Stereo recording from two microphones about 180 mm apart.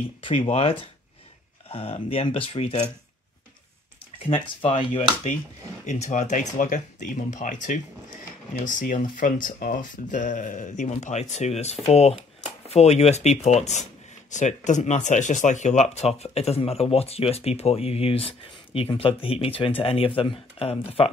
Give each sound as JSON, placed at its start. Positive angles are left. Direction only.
{"t": 0.2, "sound": "speech", "side_deg": 30}
{"t": 4.3, "sound": "speech", "side_deg": 30}
{"t": 5.9, "sound": "speech", "side_deg": 40}